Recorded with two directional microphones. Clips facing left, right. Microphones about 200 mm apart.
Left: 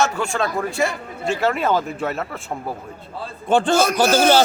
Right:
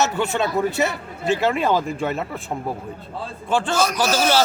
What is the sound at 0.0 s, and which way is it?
A man's voice, 5° right (ahead or behind).